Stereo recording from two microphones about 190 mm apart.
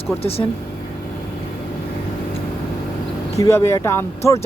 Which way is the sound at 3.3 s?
15° left (ahead or behind).